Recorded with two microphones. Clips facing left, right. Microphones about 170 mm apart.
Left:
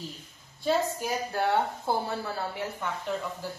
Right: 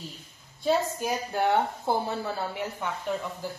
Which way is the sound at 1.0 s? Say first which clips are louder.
Right 2 dB; 20° right (ahead or behind).